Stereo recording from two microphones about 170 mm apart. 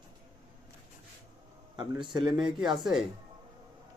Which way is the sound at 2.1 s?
25° right (ahead or behind).